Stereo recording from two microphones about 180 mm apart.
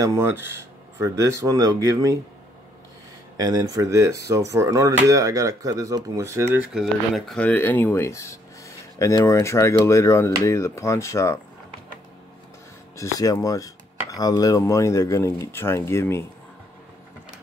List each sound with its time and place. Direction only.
0.0 s speech: 15° right (ahead or behind)
3.3 s speech: 20° right (ahead or behind)
6.7 s speech: centre (ahead or behind); by 11.3 s 15° left (ahead or behind)
12.9 s speech: 20° left (ahead or behind)